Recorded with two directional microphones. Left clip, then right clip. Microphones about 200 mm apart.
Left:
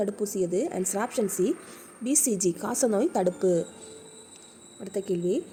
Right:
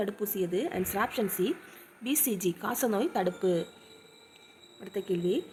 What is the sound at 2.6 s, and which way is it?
Speech, 10° left (ahead or behind).